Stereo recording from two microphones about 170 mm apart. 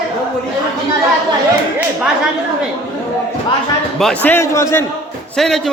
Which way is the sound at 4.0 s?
5° left (ahead or behind).